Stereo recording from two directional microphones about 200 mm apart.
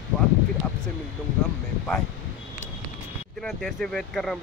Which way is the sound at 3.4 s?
Centre (ahead or behind).